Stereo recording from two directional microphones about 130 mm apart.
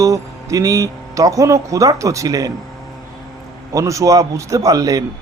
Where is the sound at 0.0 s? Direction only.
25° right (ahead or behind).